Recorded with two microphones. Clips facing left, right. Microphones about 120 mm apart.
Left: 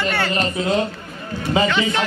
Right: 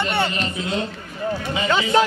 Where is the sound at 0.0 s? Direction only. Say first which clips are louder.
Even; 25° right (ahead or behind).